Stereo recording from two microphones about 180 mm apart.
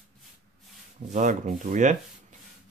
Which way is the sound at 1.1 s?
45° right (ahead or behind).